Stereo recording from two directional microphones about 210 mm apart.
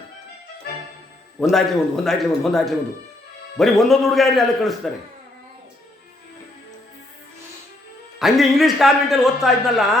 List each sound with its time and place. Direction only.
1.4 s a man's voice: centre (ahead or behind)
8.2 s a man's voice: centre (ahead or behind)